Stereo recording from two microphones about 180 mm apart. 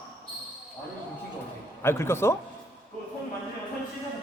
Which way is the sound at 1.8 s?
15° left (ahead or behind).